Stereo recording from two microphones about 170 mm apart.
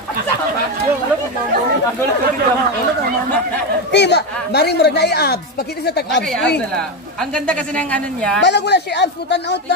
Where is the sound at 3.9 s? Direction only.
80° left.